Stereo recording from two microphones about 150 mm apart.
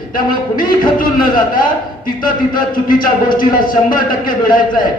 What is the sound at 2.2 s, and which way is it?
Speech, 70° left (ahead or behind).